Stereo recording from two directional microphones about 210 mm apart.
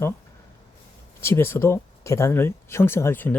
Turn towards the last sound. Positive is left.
turn(degrees=10)  # may be behind; listen again after turning